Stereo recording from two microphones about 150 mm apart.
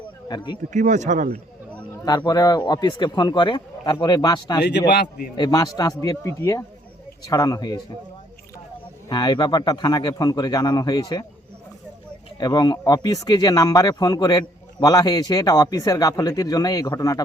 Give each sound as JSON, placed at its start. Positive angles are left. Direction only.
{"t": 0.3, "sound": "speech", "side_deg": 30}
{"t": 0.7, "sound": "speech", "side_deg": -55}
{"t": 2.0, "sound": "speech", "side_deg": 25}
{"t": 4.9, "sound": "a man's voice", "side_deg": 90}
{"t": 5.4, "sound": "speech", "side_deg": 25}
{"t": 9.0, "sound": "speech", "side_deg": 30}
{"t": 12.4, "sound": "speech", "side_deg": 25}